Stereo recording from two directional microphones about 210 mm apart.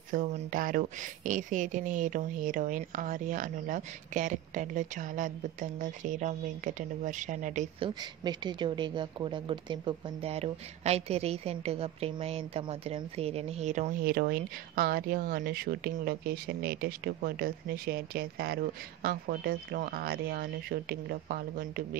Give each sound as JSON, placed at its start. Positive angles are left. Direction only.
{"t": 0.1, "sound": "speech", "side_deg": -40}
{"t": 8.0, "sound": "speech", "side_deg": -20}